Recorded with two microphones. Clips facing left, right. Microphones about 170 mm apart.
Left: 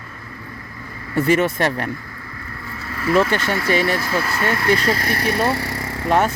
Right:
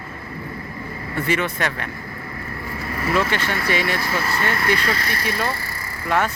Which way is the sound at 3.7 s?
35° left (ahead or behind).